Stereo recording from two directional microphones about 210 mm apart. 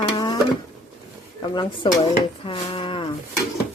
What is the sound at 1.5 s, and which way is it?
Speech, 20° left (ahead or behind).